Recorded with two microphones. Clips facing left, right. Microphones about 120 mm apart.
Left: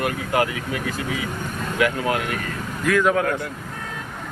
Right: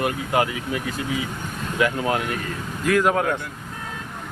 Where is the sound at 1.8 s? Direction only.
25° right (ahead or behind).